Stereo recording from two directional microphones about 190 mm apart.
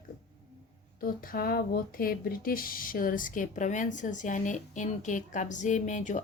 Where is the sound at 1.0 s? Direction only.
50° left (ahead or behind).